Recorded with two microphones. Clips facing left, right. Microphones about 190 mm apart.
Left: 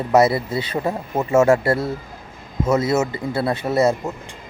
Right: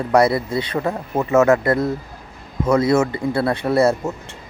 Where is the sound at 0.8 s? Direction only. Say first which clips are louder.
Left 1 dB; 10° left (ahead or behind).